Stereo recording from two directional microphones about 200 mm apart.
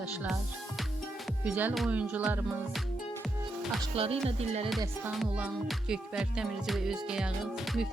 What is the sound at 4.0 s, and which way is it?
Speech, 30° right (ahead or behind).